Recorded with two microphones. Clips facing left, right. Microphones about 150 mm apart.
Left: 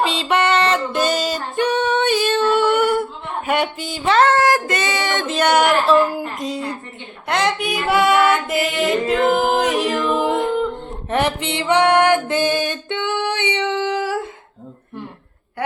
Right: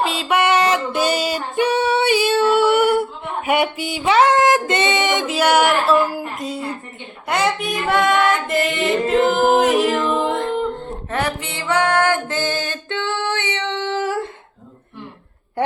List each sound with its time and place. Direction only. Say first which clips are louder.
0.0 s a sound: even; 5° right (ahead or behind)
7.3 s music: even; 5° right (ahead or behind)
11.1 s music: left 4 dB; 20° left (ahead or behind); by 14.3 s centre (ahead or behind)